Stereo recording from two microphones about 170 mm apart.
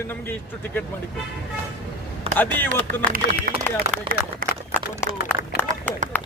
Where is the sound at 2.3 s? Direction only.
10° left (ahead or behind).